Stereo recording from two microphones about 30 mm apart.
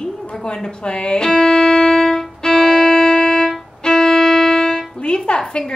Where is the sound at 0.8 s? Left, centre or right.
Left.